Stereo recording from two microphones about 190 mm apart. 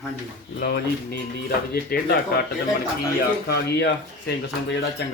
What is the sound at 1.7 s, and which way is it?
Speech, 55° left (ahead or behind).